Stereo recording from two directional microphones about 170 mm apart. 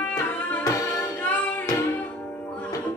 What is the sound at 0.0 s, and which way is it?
Music, 10° left (ahead or behind).